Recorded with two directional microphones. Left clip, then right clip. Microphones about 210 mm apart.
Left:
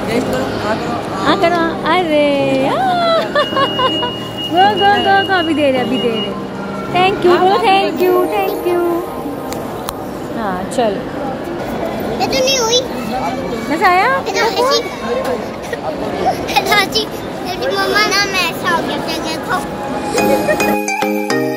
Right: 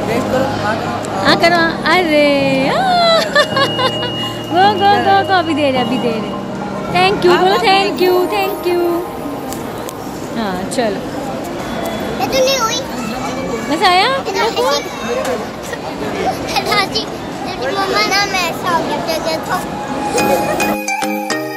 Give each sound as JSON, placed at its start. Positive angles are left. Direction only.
{"t": 1.2, "sound": "speech", "side_deg": -15}
{"t": 12.2, "sound": "a sound", "side_deg": -15}
{"t": 13.8, "sound": "speech", "side_deg": -5}
{"t": 16.3, "sound": "speech", "side_deg": 0}
{"t": 18.1, "sound": "speech", "side_deg": -10}